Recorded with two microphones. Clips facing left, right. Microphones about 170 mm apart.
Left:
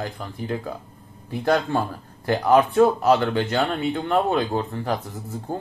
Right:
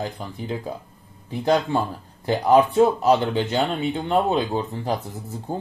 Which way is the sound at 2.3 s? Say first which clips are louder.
Right 1 dB; 20° right (ahead or behind).